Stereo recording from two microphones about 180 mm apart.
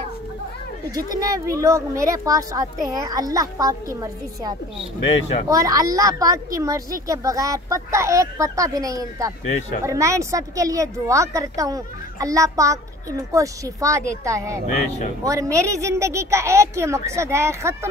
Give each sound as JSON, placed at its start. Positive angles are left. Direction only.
{"t": 1.1, "sound": "a woman's voice", "side_deg": -20}
{"t": 5.0, "sound": "speech", "side_deg": 30}
{"t": 5.5, "sound": "a woman's voice", "side_deg": -20}
{"t": 9.5, "sound": "speech", "side_deg": 35}
{"t": 9.8, "sound": "a woman's voice", "side_deg": -15}